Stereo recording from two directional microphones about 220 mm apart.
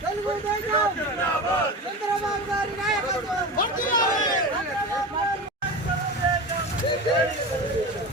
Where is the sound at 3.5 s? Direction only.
40° left (ahead or behind).